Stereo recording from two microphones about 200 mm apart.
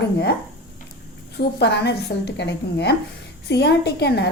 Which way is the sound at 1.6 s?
60° left (ahead or behind).